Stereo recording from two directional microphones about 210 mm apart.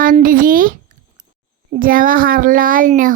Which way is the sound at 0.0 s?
40° right (ahead or behind).